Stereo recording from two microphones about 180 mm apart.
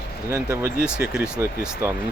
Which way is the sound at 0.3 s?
10° right (ahead or behind).